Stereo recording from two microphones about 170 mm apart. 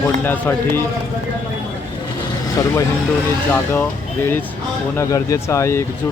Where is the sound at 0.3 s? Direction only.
10° left (ahead or behind).